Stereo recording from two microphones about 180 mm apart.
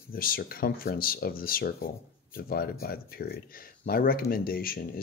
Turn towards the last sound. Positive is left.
turn(degrees=55)  # may be behind; listen again after turning